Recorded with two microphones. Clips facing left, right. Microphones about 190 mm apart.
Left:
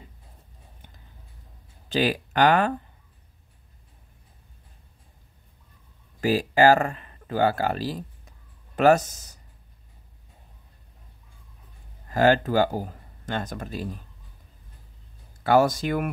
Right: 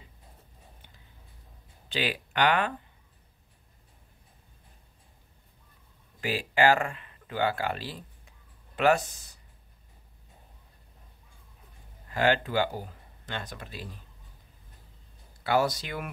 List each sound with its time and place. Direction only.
1.9 s speech: 40° left (ahead or behind)
6.2 s speech: 40° left (ahead or behind)
12.1 s speech: 40° left (ahead or behind)
15.4 s speech: 50° left (ahead or behind)